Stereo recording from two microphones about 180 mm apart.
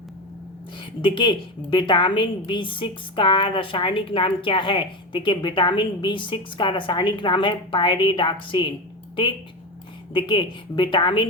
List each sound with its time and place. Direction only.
0.8 s a woman's voice: 25° left (ahead or behind)
10.1 s a woman's voice: 25° left (ahead or behind)